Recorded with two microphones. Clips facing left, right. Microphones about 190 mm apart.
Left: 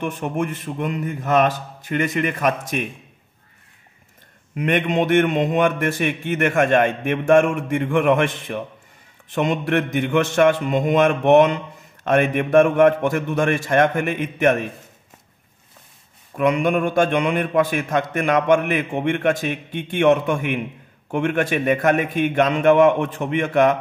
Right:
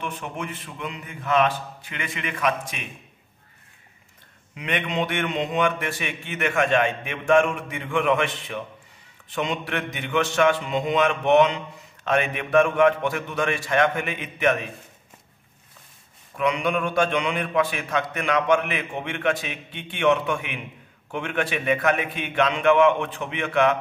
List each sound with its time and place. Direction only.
0.0 s mantra: 50° left (ahead or behind)
4.6 s mantra: 50° left (ahead or behind)
16.3 s mantra: 50° left (ahead or behind)